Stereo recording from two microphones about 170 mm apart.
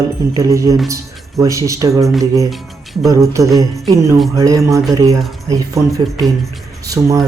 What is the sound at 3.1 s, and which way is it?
Speech, 20° right (ahead or behind).